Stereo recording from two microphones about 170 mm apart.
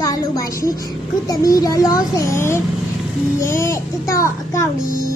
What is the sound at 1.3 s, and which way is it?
A child's voice, 20° left (ahead or behind).